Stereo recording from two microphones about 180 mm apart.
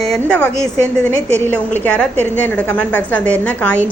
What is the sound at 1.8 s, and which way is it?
A woman's voice, 5° left (ahead or behind).